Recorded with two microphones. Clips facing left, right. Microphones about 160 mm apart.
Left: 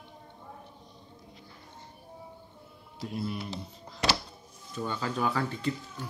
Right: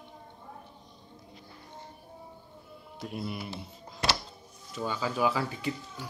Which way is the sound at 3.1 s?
10° right (ahead or behind).